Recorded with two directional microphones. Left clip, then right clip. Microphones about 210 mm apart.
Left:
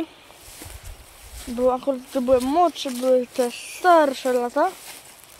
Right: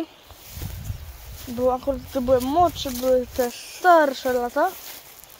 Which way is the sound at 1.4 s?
15° left (ahead or behind).